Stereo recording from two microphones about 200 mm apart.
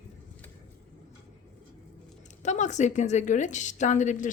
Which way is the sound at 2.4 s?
35° left (ahead or behind).